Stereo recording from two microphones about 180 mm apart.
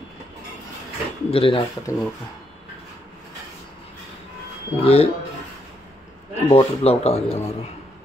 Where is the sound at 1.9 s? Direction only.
15° left (ahead or behind).